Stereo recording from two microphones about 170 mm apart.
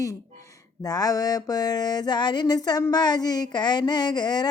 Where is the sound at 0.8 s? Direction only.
20° left (ahead or behind).